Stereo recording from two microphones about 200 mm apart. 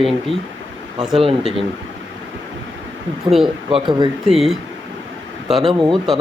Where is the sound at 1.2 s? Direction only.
30° right (ahead or behind).